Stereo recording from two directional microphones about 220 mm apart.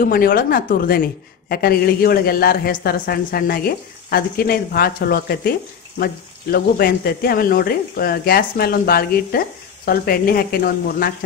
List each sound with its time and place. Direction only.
0.0 s a woman's voice: 40° left (ahead or behind)